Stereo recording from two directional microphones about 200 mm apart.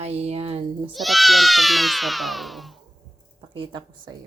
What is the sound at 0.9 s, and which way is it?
Speech, centre (ahead or behind).